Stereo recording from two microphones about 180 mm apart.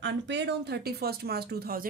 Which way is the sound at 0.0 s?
75° right (ahead or behind).